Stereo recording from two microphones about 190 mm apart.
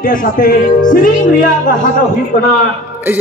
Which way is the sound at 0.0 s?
45° left (ahead or behind).